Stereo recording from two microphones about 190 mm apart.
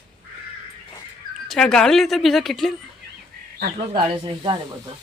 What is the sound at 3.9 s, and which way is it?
Speech, 25° right (ahead or behind).